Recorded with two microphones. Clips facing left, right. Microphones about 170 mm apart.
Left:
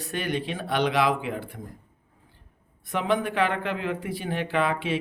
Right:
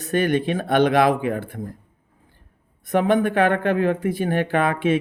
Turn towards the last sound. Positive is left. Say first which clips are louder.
# right 6 dB
turn(degrees=-50)  # may be behind; listen again after turning